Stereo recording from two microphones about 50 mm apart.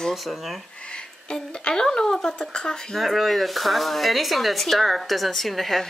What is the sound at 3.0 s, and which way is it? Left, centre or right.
Speech, centre.